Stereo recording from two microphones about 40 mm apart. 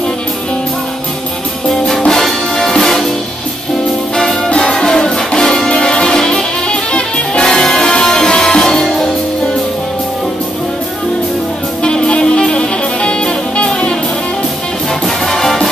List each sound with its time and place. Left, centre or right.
1.9 s music: centre
4.5 s music: left
6.7 s music: left
11.8 s music: left
15.2 s music: centre